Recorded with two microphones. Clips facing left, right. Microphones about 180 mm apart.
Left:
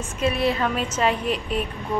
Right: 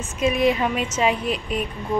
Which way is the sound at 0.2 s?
15° right (ahead or behind).